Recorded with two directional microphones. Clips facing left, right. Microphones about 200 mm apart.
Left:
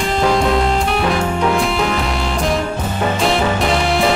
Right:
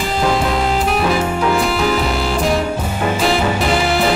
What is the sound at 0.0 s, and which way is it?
Music, centre (ahead or behind).